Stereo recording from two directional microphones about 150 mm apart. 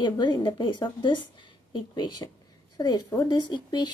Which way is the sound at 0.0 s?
30° left (ahead or behind).